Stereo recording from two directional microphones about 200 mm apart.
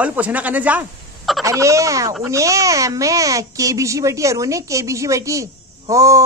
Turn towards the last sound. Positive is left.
turn(degrees=-15)  # may be behind; listen again after turning